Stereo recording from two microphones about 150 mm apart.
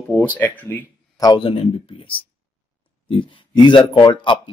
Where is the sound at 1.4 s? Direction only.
35° left (ahead or behind).